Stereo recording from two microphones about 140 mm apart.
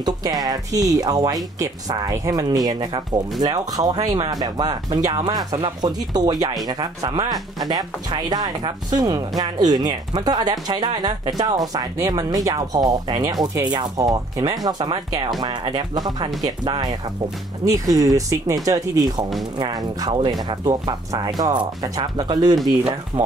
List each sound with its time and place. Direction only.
0.0 s speech: 25° right (ahead or behind)
23.1 s speech: 15° right (ahead or behind)